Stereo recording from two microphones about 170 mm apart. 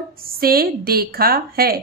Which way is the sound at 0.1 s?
60° right (ahead or behind).